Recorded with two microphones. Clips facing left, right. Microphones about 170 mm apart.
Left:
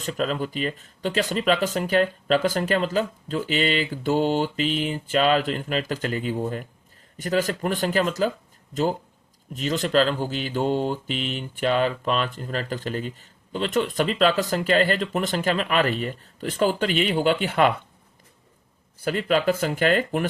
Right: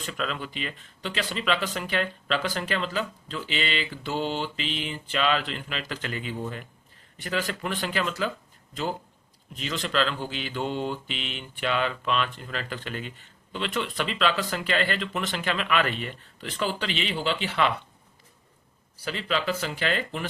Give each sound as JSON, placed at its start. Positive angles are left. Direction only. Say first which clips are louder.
{"t": 0.0, "sound": "speech", "louder": "left 6 dB", "side_deg": 40}
{"t": 18.9, "sound": "speech", "louder": "left 7 dB", "side_deg": 50}